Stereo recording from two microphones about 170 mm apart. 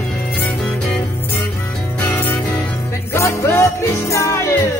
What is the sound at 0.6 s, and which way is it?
Music, centre (ahead or behind).